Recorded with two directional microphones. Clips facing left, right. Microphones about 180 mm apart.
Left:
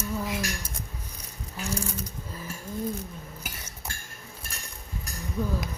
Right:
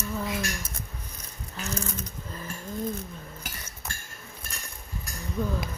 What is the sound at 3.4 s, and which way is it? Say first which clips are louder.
Cutlery: even; 10° left (ahead or behind).